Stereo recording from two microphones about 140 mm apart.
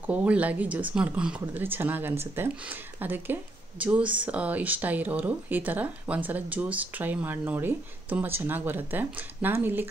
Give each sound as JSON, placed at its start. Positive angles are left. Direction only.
{"t": 0.0, "sound": "speech", "side_deg": -10}